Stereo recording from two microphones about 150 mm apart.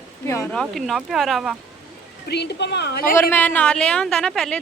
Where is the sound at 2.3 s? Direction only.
90° left.